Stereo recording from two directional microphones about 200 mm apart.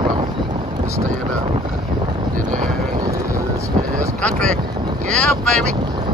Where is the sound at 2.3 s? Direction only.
40° right (ahead or behind).